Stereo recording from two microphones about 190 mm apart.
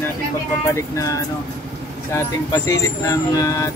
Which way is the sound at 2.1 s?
15° left (ahead or behind).